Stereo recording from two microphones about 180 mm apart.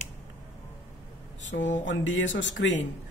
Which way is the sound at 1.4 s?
90° left.